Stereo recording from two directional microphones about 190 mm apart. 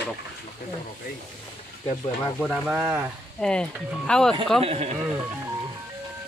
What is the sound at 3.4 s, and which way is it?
Speech, 5° left (ahead or behind).